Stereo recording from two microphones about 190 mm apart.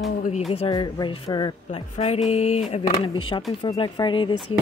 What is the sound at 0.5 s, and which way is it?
Speech, 30° left (ahead or behind).